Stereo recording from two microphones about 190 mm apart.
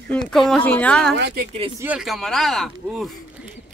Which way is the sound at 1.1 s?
60° right (ahead or behind).